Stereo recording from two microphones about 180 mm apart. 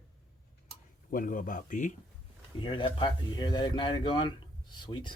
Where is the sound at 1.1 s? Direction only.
50° left (ahead or behind).